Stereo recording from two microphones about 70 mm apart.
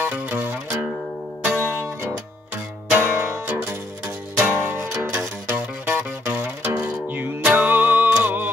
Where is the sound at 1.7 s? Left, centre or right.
Right.